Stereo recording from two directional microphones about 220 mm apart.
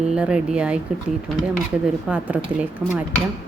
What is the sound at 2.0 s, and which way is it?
Speech, 5° right (ahead or behind).